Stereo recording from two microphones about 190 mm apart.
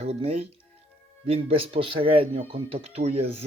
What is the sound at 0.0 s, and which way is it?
Speech, 30° right (ahead or behind).